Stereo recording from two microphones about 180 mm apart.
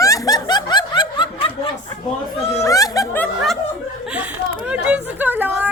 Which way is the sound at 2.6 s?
20° left (ahead or behind).